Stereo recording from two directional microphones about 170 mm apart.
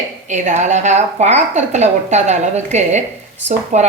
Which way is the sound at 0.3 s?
45° right (ahead or behind).